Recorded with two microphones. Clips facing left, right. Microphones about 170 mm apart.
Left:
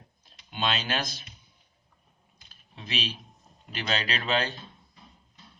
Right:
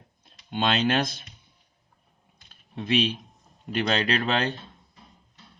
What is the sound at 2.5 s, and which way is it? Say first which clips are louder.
Typing: right 11 dB; 55° right (ahead or behind).